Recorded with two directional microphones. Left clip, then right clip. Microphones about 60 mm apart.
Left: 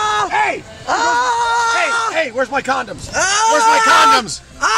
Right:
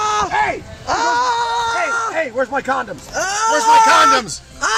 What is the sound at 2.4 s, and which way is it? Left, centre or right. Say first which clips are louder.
Speech: left 2 dB; left.